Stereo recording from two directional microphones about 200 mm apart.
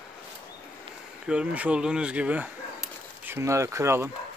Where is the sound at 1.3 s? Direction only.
5° right (ahead or behind).